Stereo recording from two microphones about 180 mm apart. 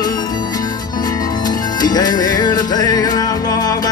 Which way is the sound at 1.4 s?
20° left (ahead or behind).